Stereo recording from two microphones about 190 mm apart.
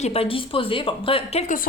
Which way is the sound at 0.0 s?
30° left (ahead or behind).